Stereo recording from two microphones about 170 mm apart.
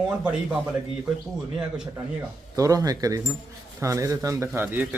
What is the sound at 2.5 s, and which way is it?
A man's voice, 20° right (ahead or behind).